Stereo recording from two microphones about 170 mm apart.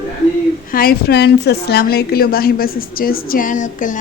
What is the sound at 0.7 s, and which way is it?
A woman's voice, 60° left (ahead or behind).